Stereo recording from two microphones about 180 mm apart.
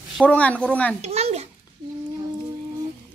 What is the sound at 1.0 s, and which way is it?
Speech, 35° right (ahead or behind).